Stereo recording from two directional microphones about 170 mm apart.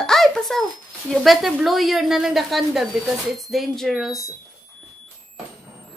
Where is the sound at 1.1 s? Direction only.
Centre (ahead or behind).